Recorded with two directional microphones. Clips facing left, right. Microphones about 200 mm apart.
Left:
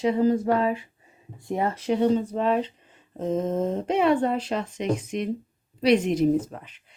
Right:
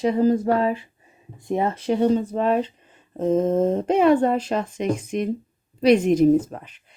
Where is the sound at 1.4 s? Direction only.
25° right (ahead or behind).